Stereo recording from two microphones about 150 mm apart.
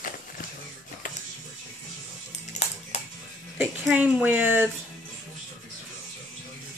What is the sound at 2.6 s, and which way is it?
Dog, 45° left (ahead or behind).